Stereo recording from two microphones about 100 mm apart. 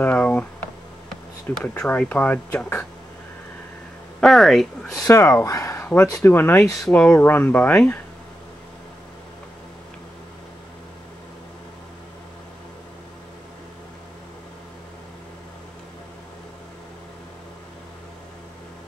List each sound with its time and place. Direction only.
0.0 s a sound: 15° left (ahead or behind)
1.6 s speech: 15° left (ahead or behind)
4.2 s speech: centre (ahead or behind)
5.0 s speech: 30° left (ahead or behind); by 8.0 s 15° left (ahead or behind)